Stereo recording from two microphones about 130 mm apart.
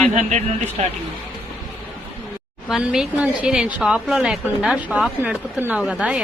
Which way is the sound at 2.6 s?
5° right (ahead or behind).